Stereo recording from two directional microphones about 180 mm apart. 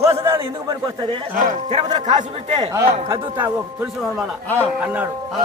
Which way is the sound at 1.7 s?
40° right (ahead or behind).